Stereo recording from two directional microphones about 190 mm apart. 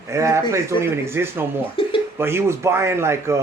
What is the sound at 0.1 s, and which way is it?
Speech, 15° right (ahead or behind).